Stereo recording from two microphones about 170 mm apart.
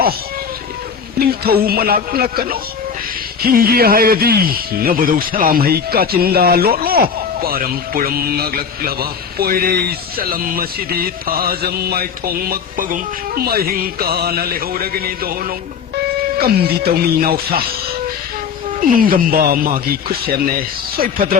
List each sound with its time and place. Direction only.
1.2 s speech: 65° right (ahead or behind)
18.8 s speech: 55° right (ahead or behind)